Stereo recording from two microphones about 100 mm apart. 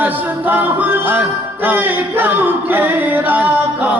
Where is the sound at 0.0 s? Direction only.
20° right (ahead or behind).